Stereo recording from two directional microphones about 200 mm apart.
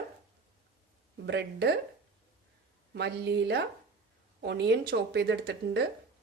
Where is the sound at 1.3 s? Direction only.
60° right (ahead or behind).